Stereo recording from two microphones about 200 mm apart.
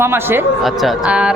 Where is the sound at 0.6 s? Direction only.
Centre (ahead or behind).